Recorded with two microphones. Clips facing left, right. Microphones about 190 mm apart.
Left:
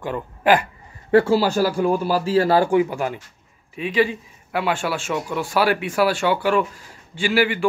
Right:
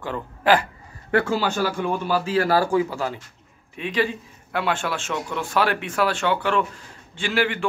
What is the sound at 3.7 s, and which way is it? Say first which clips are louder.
A man's voice: left 4 dB; 10° left (ahead or behind).